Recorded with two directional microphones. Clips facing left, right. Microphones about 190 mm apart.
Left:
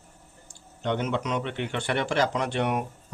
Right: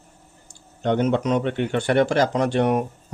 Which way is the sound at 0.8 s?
45° right (ahead or behind).